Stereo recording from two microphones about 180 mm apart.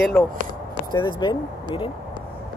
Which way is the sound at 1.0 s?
25° left (ahead or behind).